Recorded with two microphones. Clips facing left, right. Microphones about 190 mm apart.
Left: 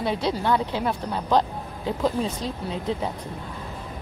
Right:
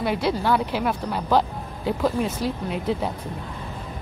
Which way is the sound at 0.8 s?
5° right (ahead or behind).